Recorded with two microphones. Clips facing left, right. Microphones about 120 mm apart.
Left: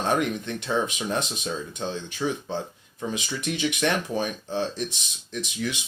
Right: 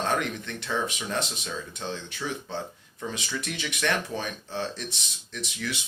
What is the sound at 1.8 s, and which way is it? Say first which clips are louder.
Speech: left 6 dB; 20° left (ahead or behind).